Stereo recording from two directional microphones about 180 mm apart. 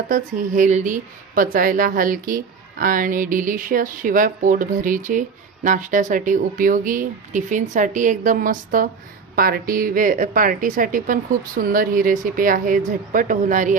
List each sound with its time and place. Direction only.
0.1 s speech: 45° right (ahead or behind)